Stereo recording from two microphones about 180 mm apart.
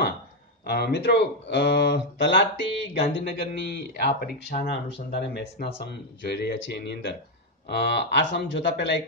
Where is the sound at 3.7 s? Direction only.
65° left (ahead or behind).